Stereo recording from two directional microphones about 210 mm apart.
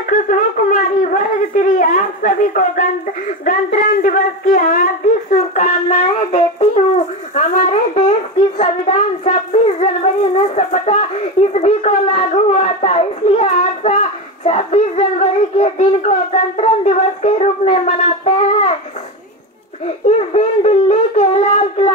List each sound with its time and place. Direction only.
0.3 s a child's voice: 40° left (ahead or behind)
20.2 s a child's voice: 30° left (ahead or behind)